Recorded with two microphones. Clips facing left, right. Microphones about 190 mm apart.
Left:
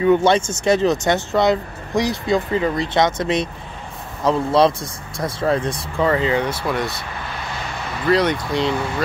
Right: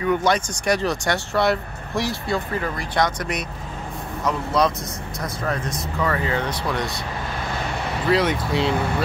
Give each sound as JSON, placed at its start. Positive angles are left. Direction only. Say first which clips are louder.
{"t": 0.0, "sound": "speech", "louder": "left 6 dB", "side_deg": 25}
{"t": 8.1, "sound": "speech", "louder": "left 3 dB", "side_deg": -5}